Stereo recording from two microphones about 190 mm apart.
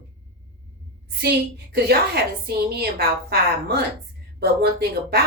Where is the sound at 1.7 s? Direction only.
55° right (ahead or behind).